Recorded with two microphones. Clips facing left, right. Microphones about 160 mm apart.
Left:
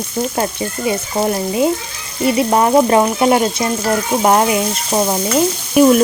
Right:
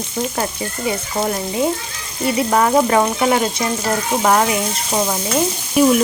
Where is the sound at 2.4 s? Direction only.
20° left (ahead or behind).